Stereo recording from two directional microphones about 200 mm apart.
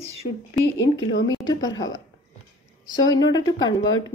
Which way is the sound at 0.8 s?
70° left (ahead or behind).